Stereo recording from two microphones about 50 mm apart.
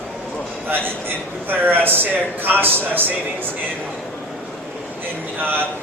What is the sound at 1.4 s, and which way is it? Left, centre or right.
A man's voice, right.